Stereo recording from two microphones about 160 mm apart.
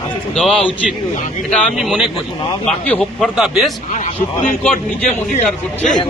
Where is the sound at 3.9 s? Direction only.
55° left (ahead or behind).